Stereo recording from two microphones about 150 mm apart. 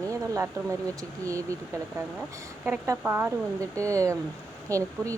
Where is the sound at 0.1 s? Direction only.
20° right (ahead or behind).